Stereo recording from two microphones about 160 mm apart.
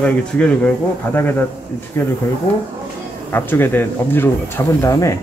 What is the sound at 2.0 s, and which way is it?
Speech, 15° left (ahead or behind).